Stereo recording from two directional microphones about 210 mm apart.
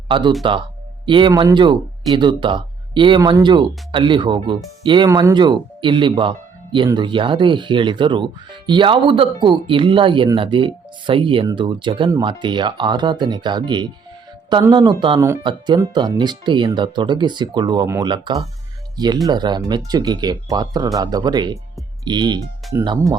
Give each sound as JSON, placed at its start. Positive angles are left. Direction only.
{"t": 0.1, "sound": "speech", "side_deg": -20}